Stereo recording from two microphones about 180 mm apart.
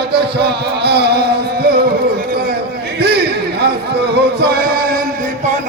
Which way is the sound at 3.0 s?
65° right (ahead or behind).